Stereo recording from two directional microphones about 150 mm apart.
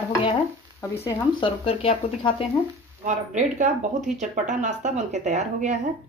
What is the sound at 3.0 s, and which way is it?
A woman's voice, 55° right (ahead or behind).